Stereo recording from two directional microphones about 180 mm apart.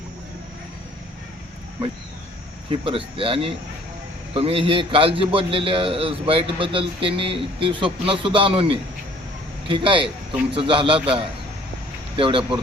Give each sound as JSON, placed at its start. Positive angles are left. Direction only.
{"t": 2.8, "sound": "a man's voice", "side_deg": -30}